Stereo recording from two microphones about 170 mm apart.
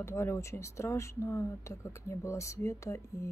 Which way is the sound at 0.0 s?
15° left (ahead or behind).